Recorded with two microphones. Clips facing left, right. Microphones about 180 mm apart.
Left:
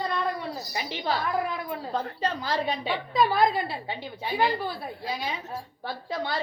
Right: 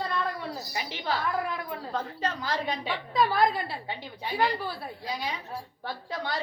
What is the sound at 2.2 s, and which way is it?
A woman's voice, 30° left (ahead or behind).